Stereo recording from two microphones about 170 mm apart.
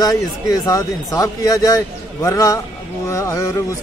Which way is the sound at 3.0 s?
15° left (ahead or behind).